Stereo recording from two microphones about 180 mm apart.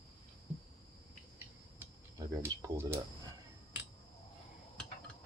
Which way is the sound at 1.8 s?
15° right (ahead or behind).